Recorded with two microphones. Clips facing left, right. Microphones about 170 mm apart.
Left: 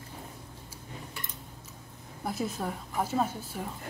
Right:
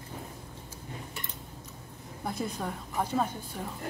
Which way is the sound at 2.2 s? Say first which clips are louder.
Left 1 dB; 5° left (ahead or behind).